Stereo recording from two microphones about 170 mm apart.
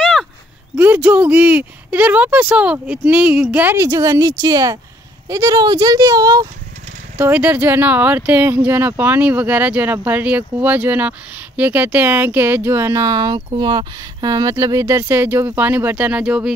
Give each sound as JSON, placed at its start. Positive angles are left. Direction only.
{"t": 0.0, "sound": "a sound", "side_deg": 0}
{"t": 0.7, "sound": "speech", "side_deg": -10}
{"t": 7.2, "sound": "speech", "side_deg": -10}